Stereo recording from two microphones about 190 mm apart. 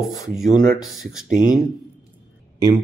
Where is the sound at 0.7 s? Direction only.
5° right (ahead or behind).